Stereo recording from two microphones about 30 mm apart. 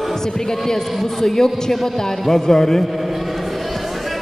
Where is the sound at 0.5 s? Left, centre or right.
Centre.